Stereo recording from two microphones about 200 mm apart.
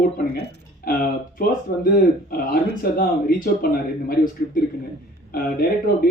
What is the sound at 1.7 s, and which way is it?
Speech, 45° left (ahead or behind).